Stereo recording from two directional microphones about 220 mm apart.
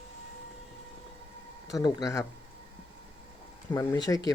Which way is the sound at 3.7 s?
15° left (ahead or behind).